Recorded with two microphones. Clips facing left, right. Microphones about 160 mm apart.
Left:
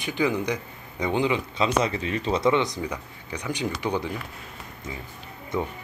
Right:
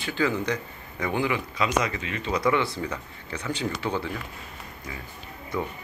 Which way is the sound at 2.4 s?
20° left (ahead or behind).